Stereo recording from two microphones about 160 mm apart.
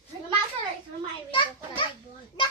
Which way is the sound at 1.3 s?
30° left (ahead or behind).